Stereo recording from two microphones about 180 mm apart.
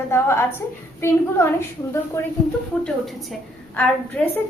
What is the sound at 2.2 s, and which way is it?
Speech, 15° left (ahead or behind).